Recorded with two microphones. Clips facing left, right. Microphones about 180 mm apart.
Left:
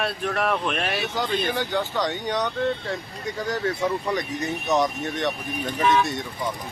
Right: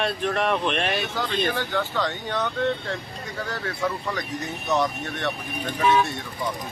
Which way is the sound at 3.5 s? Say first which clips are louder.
Left 4 dB; 15° left (ahead or behind).